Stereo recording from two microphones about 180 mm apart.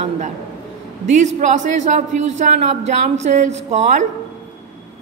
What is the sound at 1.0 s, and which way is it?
A man's voice, 40° right (ahead or behind).